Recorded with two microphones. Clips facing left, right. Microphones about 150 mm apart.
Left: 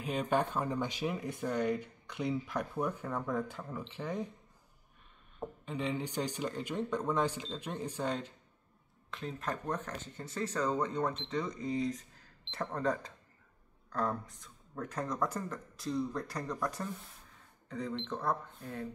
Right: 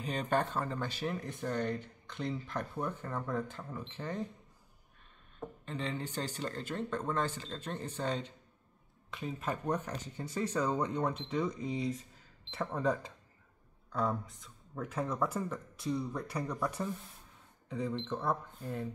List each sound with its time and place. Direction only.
0.0 s speech: 10° left (ahead or behind)
5.7 s speech: 10° left (ahead or behind)
9.1 s speech: 5° right (ahead or behind)